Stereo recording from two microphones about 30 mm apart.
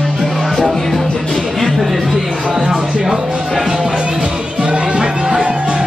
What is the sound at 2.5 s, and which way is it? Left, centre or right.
Music, right.